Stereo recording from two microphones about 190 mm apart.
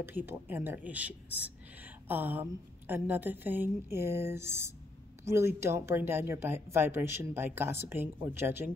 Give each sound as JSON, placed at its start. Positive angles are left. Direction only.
{"t": 0.0, "sound": "speech", "side_deg": -10}